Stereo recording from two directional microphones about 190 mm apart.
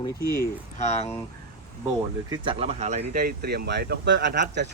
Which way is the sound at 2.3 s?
25° right (ahead or behind).